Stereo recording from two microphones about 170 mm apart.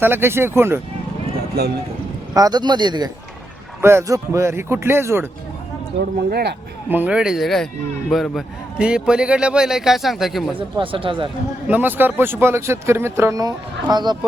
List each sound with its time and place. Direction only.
0.0 s speech: 15° right (ahead or behind)
2.3 s speech: 25° right (ahead or behind)
3.8 s speech: 15° right (ahead or behind)
6.3 s speech: 75° right (ahead or behind)
6.9 s a man's voice: 5° right (ahead or behind)
10.5 s speech: 30° right (ahead or behind)
11.7 s speech: 10° right (ahead or behind)